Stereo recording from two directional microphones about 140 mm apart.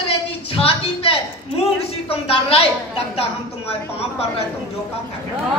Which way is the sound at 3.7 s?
45° left (ahead or behind).